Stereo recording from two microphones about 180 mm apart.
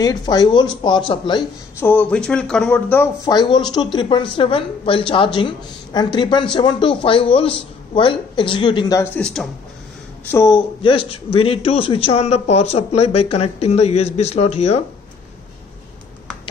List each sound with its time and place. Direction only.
0.0 s a woman's voice: 20° left (ahead or behind)
1.8 s speech: 10° left (ahead or behind)
3.3 s a woman's voice: 25° left (ahead or behind); by 9.5 s 5° left (ahead or behind)
10.2 s speech: 15° left (ahead or behind)
10.8 s a man's voice: 30° left (ahead or behind)